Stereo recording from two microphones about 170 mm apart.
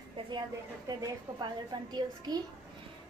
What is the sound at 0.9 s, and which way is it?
A woman's voice, 20° right (ahead or behind).